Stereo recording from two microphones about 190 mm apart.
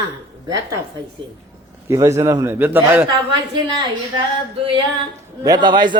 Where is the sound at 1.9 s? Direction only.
15° right (ahead or behind).